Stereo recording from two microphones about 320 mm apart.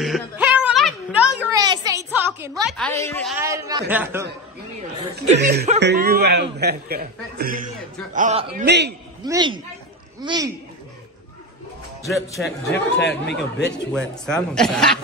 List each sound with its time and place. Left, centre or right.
0.0 s a sound: centre
2.8 s a woman's voice: centre
3.3 s a man's voice: centre
5.1 s a man's voice: right
9.2 s a man's voice: centre
12.0 s speech: centre
12.4 s speech: left
13.9 s speech: centre